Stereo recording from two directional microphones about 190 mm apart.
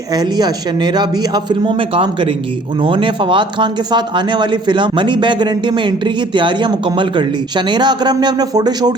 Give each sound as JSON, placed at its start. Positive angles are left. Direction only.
{"t": 0.1, "sound": "speech", "side_deg": -20}